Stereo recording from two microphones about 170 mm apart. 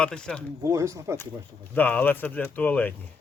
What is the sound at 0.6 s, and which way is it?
Speech, 20° right (ahead or behind).